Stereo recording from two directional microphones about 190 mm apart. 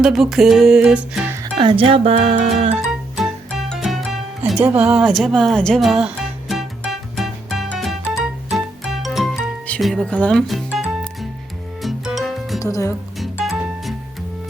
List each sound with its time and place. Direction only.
0.0 s music: centre (ahead or behind)
1.5 s speech: 30° right (ahead or behind)
3.2 s music: centre (ahead or behind)
12.5 s speech: 15° left (ahead or behind)
13.4 s music: centre (ahead or behind)